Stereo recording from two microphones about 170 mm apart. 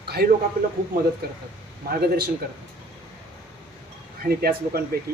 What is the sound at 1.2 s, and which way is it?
Speech, 65° right (ahead or behind).